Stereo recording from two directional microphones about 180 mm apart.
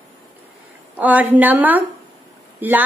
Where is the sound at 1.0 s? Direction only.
10° right (ahead or behind).